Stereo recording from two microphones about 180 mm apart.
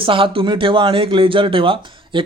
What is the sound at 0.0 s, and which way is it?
Speech, 30° right (ahead or behind).